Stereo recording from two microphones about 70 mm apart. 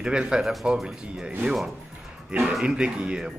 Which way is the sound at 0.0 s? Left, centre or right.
Centre.